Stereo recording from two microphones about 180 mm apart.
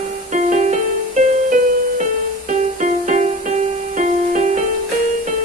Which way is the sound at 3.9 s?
45° right (ahead or behind).